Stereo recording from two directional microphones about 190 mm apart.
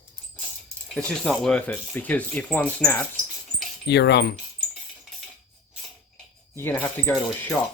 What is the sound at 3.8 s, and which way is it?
Keys jangling, 65° left (ahead or behind).